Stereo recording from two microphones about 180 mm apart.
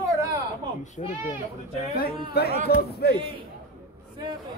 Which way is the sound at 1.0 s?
40° left (ahead or behind).